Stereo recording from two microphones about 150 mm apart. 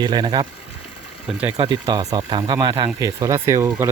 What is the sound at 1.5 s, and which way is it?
Speech, 30° right (ahead or behind).